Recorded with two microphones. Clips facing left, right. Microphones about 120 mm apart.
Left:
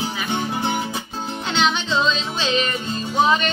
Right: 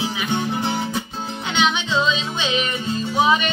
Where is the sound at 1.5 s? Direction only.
5° right (ahead or behind).